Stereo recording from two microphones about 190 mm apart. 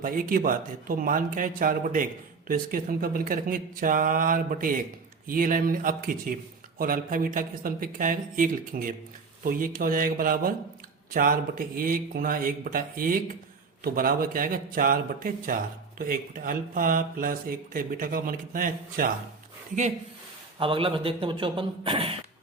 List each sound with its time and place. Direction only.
0.0 s speech: 45° right (ahead or behind)
20.6 s speech: 30° right (ahead or behind)